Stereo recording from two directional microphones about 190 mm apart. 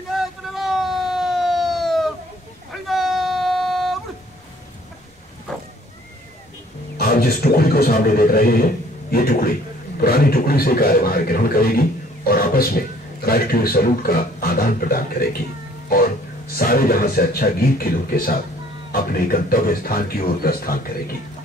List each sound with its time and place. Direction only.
0.1 s emergency vehicle: centre (ahead or behind)
2.7 s vehicle: centre (ahead or behind)
7.0 s a man's voice: 55° left (ahead or behind)